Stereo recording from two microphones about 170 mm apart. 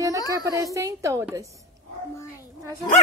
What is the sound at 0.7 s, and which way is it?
Speech, 20° right (ahead or behind).